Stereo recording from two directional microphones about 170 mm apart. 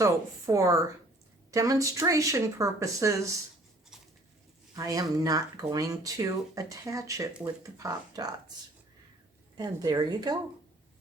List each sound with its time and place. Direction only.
0.0 s speech: 20° right (ahead or behind)
4.8 s speech: 20° right (ahead or behind)
9.6 s speech: 25° right (ahead or behind)